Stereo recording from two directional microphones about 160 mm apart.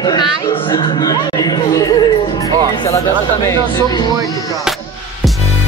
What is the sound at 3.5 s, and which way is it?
Speech, 25° left (ahead or behind).